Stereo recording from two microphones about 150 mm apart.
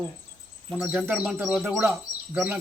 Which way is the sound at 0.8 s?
5° right (ahead or behind).